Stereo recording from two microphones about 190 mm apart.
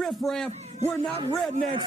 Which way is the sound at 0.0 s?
Centre (ahead or behind).